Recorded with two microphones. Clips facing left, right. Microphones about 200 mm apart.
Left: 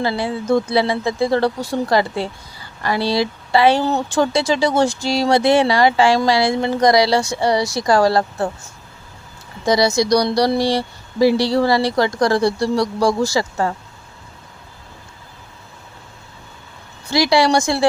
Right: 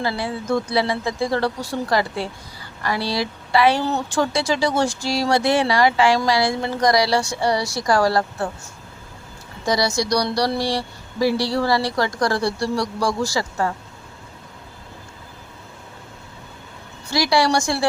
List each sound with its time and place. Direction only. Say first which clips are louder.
0.0 s a woman's voice: left 4 dB; 25° left (ahead or behind)
9.6 s a woman's voice: left 5 dB; 25° left (ahead or behind)
17.1 s a woman's voice: left 4 dB; 25° left (ahead or behind)